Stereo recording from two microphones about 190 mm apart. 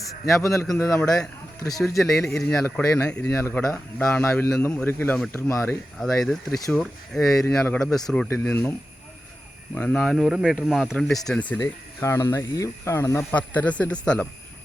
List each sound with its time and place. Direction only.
0.4 s speech: 15° left (ahead or behind)
2.4 s speech: 5° left (ahead or behind)
6.0 s speech: centre (ahead or behind)
9.7 s speech: 5° left (ahead or behind)